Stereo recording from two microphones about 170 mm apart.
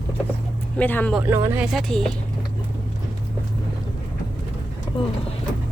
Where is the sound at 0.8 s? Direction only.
10° left (ahead or behind).